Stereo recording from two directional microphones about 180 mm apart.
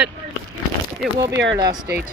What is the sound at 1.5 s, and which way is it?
Speech, 25° right (ahead or behind).